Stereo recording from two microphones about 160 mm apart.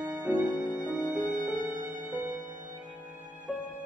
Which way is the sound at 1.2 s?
55° right (ahead or behind).